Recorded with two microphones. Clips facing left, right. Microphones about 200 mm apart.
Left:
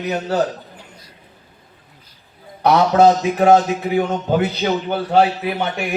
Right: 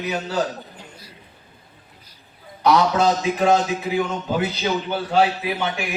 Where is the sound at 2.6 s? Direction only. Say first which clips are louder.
Left 4 dB; 60° left (ahead or behind).